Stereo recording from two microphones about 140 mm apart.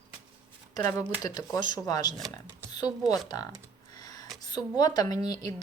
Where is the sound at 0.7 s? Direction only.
25° left (ahead or behind).